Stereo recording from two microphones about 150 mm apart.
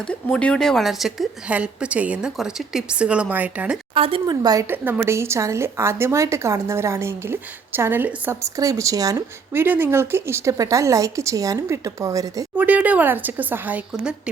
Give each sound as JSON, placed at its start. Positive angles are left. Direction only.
{"t": 0.1, "sound": "a woman's voice", "side_deg": 10}
{"t": 3.9, "sound": "speech", "side_deg": -40}
{"t": 4.7, "sound": "a woman's voice", "side_deg": -15}
{"t": 12.5, "sound": "a woman's voice", "side_deg": -10}